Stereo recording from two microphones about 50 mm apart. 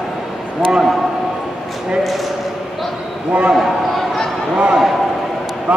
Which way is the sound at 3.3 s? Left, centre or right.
Right.